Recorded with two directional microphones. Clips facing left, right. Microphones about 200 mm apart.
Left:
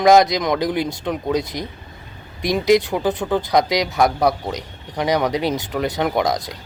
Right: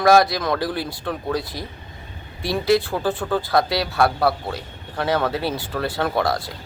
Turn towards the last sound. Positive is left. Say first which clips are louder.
# left 2 dB
turn(degrees=15)  # may be behind; listen again after turning